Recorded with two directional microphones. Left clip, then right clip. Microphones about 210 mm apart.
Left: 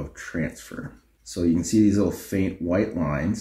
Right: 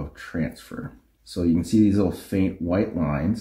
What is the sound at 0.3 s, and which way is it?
Speech, 35° right (ahead or behind).